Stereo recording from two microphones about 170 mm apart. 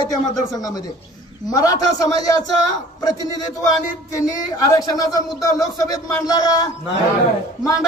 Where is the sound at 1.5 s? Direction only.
20° left (ahead or behind).